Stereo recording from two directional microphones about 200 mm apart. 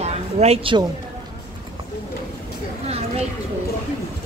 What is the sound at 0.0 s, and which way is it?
Music, 30° right (ahead or behind).